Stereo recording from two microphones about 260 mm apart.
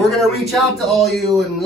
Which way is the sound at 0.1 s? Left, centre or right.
Centre.